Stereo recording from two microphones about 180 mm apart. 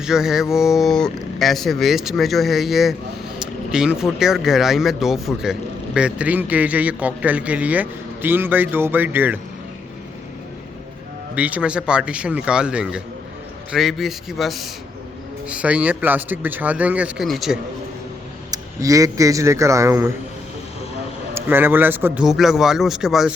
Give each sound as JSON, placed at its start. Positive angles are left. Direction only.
{"t": 0.0, "sound": "speech", "side_deg": -5}
{"t": 11.3, "sound": "speech", "side_deg": -10}
{"t": 18.5, "sound": "speech", "side_deg": -20}
{"t": 21.3, "sound": "speech", "side_deg": -10}